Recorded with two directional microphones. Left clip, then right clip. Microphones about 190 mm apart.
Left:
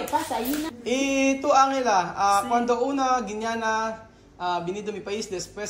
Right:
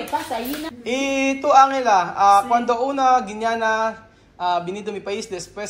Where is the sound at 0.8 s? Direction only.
20° left (ahead or behind).